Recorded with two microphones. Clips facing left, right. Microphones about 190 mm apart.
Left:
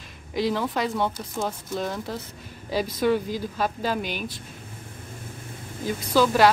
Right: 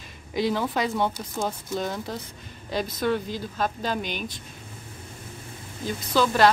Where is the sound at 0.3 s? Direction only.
Centre (ahead or behind).